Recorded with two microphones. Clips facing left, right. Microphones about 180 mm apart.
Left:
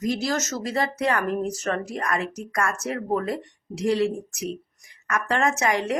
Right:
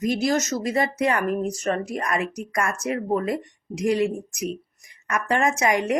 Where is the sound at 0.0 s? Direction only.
20° right (ahead or behind).